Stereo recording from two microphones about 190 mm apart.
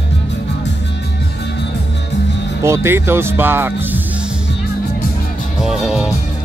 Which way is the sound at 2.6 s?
15° right (ahead or behind).